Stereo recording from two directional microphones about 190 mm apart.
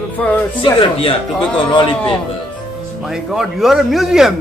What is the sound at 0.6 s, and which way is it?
A man's voice, 30° left (ahead or behind).